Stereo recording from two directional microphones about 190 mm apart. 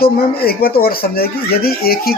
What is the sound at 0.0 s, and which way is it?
Speech, 55° left (ahead or behind).